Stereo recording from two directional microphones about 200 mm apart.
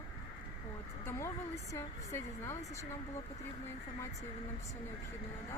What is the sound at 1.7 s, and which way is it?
Speech, 15° left (ahead or behind).